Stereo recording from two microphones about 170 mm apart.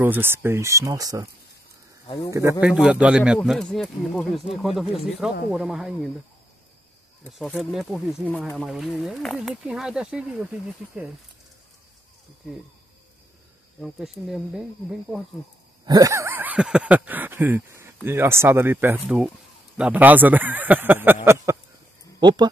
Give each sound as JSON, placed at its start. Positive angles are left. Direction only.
{"t": 0.0, "sound": "speech", "side_deg": -10}
{"t": 2.0, "sound": "speech", "side_deg": 25}
{"t": 2.6, "sound": "speech", "side_deg": -5}
{"t": 7.3, "sound": "speech", "side_deg": 0}
{"t": 13.7, "sound": "speech", "side_deg": 0}
{"t": 15.8, "sound": "speech", "side_deg": -20}